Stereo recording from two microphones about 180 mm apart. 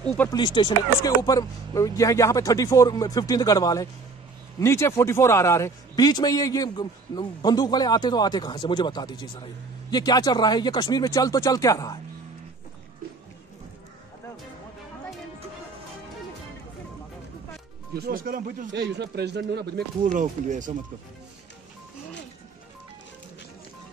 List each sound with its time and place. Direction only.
0.0 s speech: 5° left (ahead or behind)
0.3 s a man's voice: 25° left (ahead or behind)
17.9 s speech: 55° right (ahead or behind)
18.7 s speech: 75° right (ahead or behind)
20.0 s speech: 45° right (ahead or behind)